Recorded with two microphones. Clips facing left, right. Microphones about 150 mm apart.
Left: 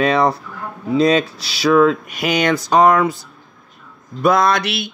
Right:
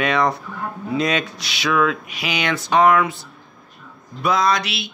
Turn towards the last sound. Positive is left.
turn(degrees=55)  # may be behind; listen again after turning